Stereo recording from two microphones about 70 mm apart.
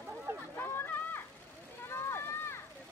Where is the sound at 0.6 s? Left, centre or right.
Left.